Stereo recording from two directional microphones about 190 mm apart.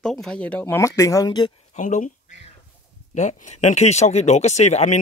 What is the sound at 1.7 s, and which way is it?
Speech, 40° left (ahead or behind).